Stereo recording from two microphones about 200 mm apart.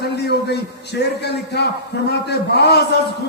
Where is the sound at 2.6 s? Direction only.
55° left (ahead or behind).